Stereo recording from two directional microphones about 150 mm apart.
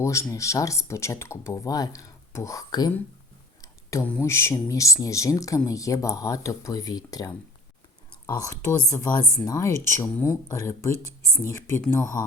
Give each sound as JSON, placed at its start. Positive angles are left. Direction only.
{"t": 0.0, "sound": "speech", "side_deg": 20}
{"t": 3.6, "sound": "a sound", "side_deg": 20}
{"t": 4.3, "sound": "speech", "side_deg": 15}